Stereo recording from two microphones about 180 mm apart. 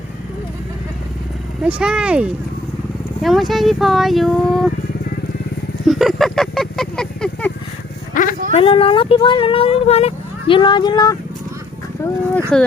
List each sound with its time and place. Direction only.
1.6 s speech: 5° right (ahead or behind)
5.9 s honk: centre (ahead or behind)
8.1 s vehicle: 50° left (ahead or behind)
8.5 s speech: 30° left (ahead or behind)
12.5 s speech: 5° left (ahead or behind)